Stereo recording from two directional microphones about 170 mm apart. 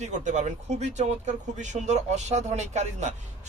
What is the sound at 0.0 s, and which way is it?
Speech, 45° right (ahead or behind).